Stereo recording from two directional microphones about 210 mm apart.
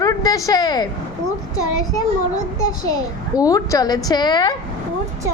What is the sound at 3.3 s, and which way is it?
A woman's voice, 15° left (ahead or behind).